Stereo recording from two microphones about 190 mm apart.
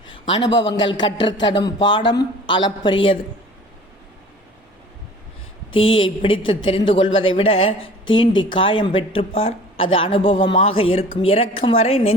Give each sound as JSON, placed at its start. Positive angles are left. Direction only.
{"t": 0.3, "sound": "speech", "side_deg": 25}
{"t": 5.8, "sound": "a woman's voice", "side_deg": 30}